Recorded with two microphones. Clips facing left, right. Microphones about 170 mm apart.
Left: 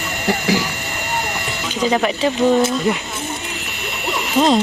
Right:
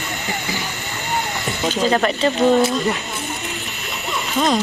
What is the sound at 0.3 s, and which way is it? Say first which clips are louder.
Speech: left 11 dB; 90° left.